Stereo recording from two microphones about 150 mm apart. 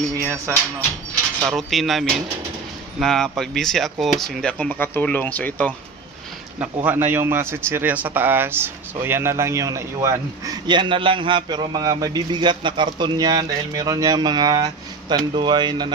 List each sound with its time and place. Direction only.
1.5 s speech: centre (ahead or behind)
6.9 s a man's voice: 15° right (ahead or behind); by 15.9 s 30° right (ahead or behind)